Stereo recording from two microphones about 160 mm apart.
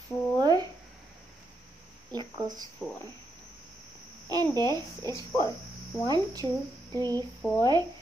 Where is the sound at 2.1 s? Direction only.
25° right (ahead or behind).